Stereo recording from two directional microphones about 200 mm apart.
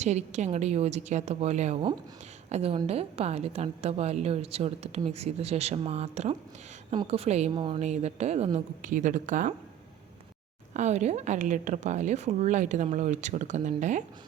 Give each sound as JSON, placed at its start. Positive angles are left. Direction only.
{"t": 0.0, "sound": "a woman's voice", "side_deg": -35}
{"t": 10.8, "sound": "a woman's voice", "side_deg": -35}